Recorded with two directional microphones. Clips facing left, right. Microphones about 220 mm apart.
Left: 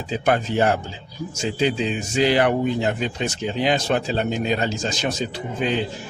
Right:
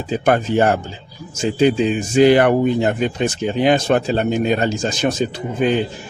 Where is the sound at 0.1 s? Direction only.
50° right (ahead or behind).